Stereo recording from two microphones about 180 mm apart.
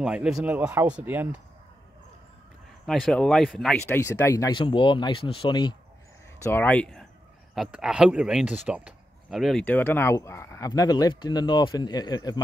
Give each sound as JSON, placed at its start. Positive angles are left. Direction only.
{"t": 0.0, "sound": "speech", "side_deg": -5}
{"t": 2.9, "sound": "speech", "side_deg": 5}
{"t": 3.8, "sound": "speech", "side_deg": 15}
{"t": 6.4, "sound": "speech", "side_deg": 10}